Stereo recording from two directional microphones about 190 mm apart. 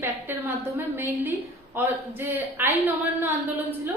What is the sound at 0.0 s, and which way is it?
A woman's voice, 10° right (ahead or behind).